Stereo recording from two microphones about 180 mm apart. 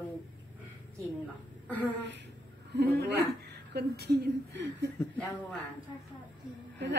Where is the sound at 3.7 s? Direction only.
60° right (ahead or behind).